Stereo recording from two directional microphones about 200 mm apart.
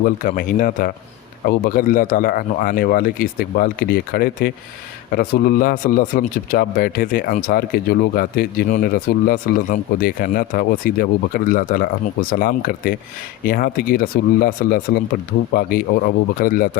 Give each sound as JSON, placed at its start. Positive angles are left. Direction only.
{"t": 0.0, "sound": "speech", "side_deg": 45}